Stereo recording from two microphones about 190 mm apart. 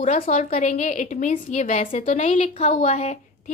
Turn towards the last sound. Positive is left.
turn(degrees=35)  # may be behind; listen again after turning